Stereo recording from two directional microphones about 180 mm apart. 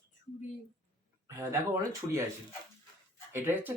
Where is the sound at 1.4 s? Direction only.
15° right (ahead or behind).